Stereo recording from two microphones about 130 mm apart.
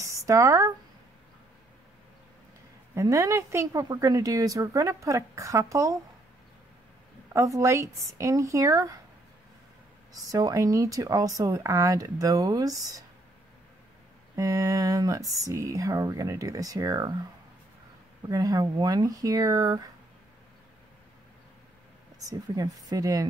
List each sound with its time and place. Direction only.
0.0 s speech: 25° right (ahead or behind)
2.9 s a woman's voice: 25° right (ahead or behind)
7.3 s a woman's voice: 25° right (ahead or behind)
10.3 s a woman's voice: 25° right (ahead or behind)
14.3 s a woman's voice: 25° right (ahead or behind)
18.3 s a woman's voice: 30° right (ahead or behind)
22.3 s a woman's voice: 30° right (ahead or behind)